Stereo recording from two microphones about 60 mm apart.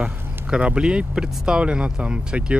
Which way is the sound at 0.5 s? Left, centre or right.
Centre.